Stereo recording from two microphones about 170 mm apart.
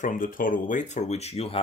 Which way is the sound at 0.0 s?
50° left (ahead or behind).